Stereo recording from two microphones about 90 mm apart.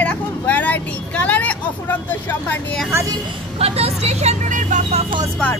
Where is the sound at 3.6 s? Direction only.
90° right.